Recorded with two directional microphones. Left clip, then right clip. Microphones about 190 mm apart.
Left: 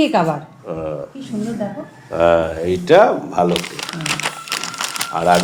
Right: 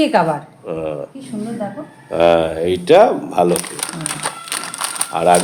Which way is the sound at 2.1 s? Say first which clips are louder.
Right 1 dB; 35° right (ahead or behind).